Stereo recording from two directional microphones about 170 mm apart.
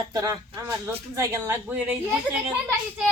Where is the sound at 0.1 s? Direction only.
20° right (ahead or behind).